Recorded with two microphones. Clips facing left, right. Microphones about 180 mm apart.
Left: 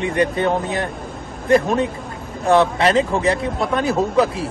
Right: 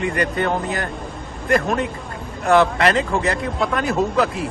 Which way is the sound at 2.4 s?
Centre (ahead or behind).